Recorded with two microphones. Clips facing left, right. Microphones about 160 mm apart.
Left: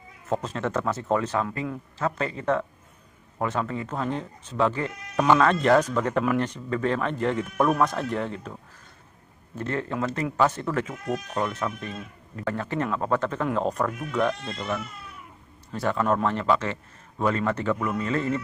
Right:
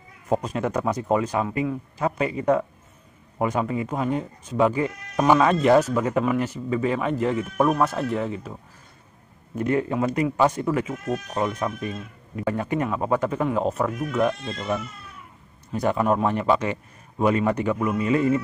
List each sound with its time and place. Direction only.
0.3 s speech: 15° right (ahead or behind)
9.6 s speech: 10° right (ahead or behind)